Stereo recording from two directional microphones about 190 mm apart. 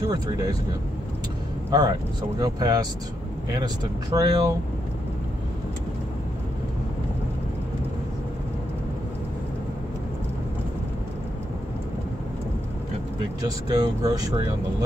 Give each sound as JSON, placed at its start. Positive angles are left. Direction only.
{"t": 0.1, "sound": "speech", "side_deg": -20}
{"t": 1.7, "sound": "speech", "side_deg": -20}
{"t": 13.7, "sound": "speech", "side_deg": -20}